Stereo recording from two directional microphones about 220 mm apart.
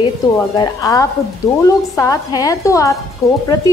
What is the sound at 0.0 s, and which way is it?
A woman's voice, 15° left (ahead or behind).